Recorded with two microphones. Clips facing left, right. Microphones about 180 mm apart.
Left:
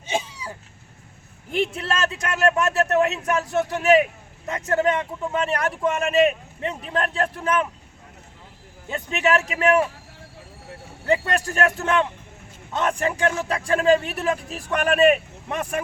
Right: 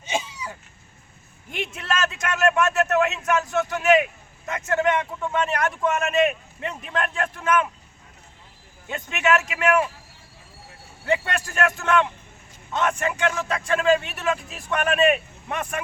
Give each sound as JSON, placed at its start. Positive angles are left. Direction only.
{"t": 0.0, "sound": "a sound", "side_deg": 30}
{"t": 1.5, "sound": "speech", "side_deg": 35}
{"t": 8.9, "sound": "speech", "side_deg": 35}
{"t": 11.0, "sound": "speech", "side_deg": 35}